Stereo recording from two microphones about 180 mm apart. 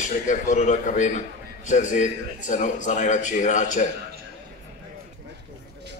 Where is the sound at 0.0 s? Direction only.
45° left (ahead or behind).